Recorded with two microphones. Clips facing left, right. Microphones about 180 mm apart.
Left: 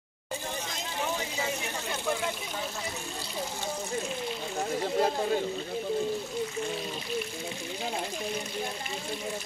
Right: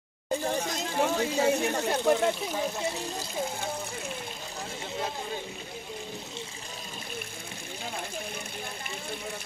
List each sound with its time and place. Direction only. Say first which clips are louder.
0.9 s speech: right 7 dB; 45° right (ahead or behind)
4.9 s speech: left 7 dB; 55° left (ahead or behind)